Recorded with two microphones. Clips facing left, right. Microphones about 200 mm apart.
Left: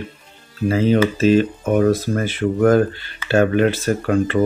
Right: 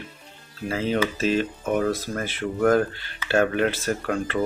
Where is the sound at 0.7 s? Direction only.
5° left (ahead or behind).